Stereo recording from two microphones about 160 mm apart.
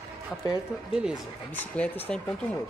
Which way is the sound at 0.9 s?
5° right (ahead or behind).